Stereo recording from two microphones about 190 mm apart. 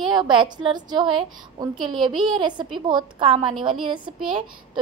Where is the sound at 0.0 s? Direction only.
25° right (ahead or behind).